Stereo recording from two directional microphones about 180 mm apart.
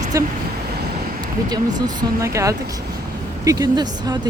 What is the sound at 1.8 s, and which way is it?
Speech, 20° right (ahead or behind).